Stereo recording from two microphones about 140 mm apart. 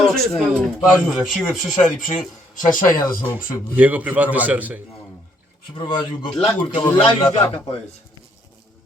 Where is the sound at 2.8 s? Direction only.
90° left.